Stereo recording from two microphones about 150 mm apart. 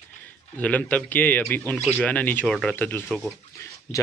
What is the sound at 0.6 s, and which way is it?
A man's voice, 10° left (ahead or behind).